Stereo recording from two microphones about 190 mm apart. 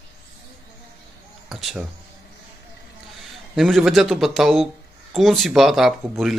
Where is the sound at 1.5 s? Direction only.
Centre (ahead or behind).